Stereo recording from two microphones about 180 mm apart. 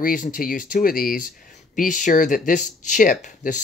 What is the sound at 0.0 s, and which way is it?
Speech, 50° left (ahead or behind).